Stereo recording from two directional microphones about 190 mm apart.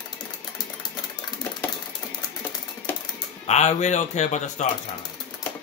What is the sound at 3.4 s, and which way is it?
A man's voice, 35° left (ahead or behind).